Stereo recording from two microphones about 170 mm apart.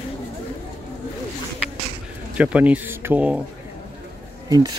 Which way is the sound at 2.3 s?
10° right (ahead or behind).